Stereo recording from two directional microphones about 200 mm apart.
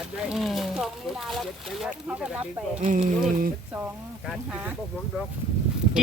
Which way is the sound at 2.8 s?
35° right (ahead or behind).